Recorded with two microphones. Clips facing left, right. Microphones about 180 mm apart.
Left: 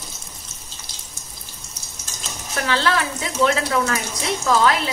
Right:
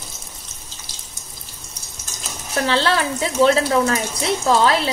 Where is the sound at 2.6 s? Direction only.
30° right (ahead or behind).